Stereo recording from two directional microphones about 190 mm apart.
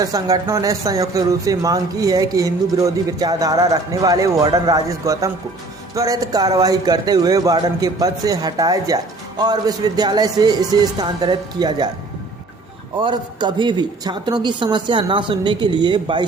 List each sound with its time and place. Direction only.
0.0 s speech: 20° right (ahead or behind)
13.0 s speech: 25° right (ahead or behind)